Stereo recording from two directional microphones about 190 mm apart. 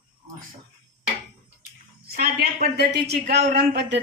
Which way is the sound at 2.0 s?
55° right (ahead or behind).